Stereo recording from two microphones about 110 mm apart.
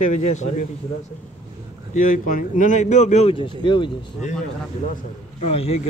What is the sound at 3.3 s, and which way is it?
Speech, 50° left (ahead or behind).